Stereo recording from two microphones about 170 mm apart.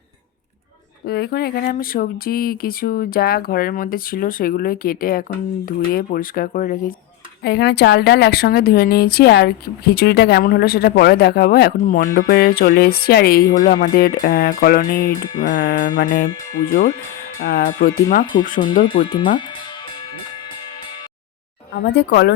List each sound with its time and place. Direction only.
1.0 s speech: 70° left (ahead or behind)
7.4 s a woman's voice: 80° left; by 12.2 s 50° left (ahead or behind)
12.3 s a woman's voice: 65° left (ahead or behind); by 15.9 s 50° left (ahead or behind)
17.4 s speech: 50° left (ahead or behind)
19.0 s speech: 30° left (ahead or behind)
21.7 s speech: 90° left